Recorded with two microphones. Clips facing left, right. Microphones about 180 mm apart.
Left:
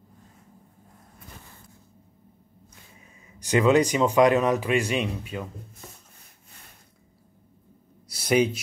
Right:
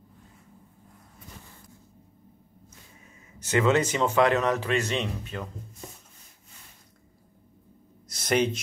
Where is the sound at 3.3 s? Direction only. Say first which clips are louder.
Left 3 dB; 15° left (ahead or behind).